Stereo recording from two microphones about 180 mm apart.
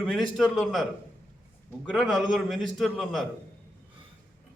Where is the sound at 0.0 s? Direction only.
Centre (ahead or behind).